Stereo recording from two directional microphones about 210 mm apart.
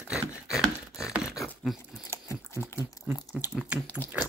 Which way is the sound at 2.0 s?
15° left (ahead or behind).